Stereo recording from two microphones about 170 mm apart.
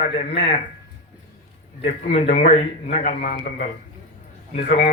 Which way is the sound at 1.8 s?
35° left (ahead or behind).